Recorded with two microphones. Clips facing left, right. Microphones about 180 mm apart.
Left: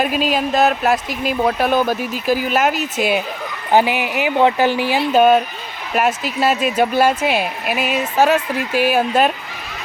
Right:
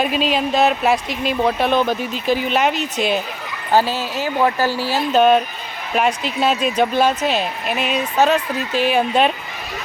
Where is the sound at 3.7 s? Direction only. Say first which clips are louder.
Left 2 dB; 15° left (ahead or behind).